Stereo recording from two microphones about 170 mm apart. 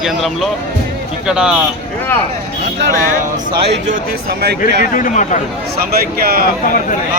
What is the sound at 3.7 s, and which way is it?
Speech, 85° right.